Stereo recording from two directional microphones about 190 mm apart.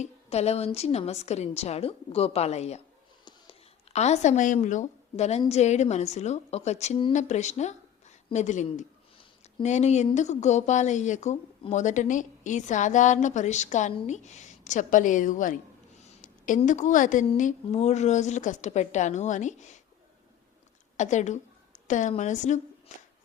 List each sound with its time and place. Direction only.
0.0 s a woman's voice: 35° left (ahead or behind)
3.9 s a woman's voice: 35° left (ahead or behind)
20.9 s a woman's voice: 40° left (ahead or behind)
22.9 s a sound: 40° left (ahead or behind)